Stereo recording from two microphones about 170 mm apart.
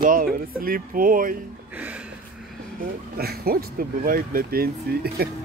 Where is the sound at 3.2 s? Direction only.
65° right (ahead or behind).